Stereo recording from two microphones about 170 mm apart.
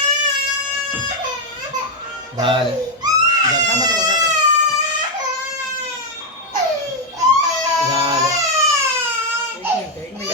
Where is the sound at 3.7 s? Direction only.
20° right (ahead or behind).